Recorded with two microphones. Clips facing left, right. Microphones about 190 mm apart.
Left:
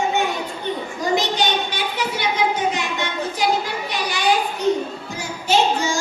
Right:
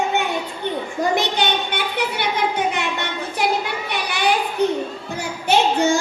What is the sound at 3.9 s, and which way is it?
Children playing, 60° right (ahead or behind).